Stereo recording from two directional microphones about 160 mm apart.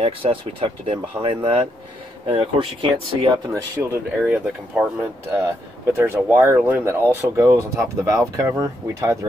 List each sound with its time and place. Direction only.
0.0 s speech: 35° right (ahead or behind)
3.7 s speech: 15° right (ahead or behind)